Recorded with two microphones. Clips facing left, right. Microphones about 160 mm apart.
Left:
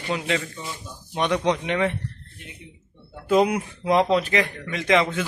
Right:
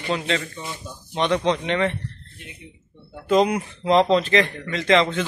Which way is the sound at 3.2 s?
10° left (ahead or behind).